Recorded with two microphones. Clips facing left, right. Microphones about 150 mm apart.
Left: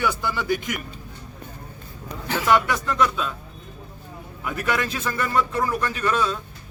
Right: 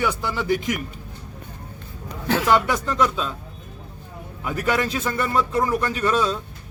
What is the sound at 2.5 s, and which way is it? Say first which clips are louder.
Speech: left 2 dB; 30° right (ahead or behind).